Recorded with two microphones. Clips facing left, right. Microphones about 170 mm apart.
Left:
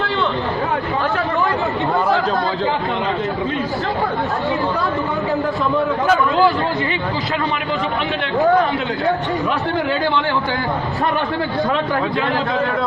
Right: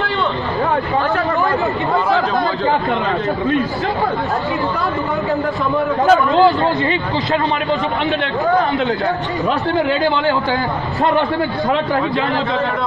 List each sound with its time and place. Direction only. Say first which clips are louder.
6.0 s a man's voice: right 5 dB; 25° right (ahead or behind)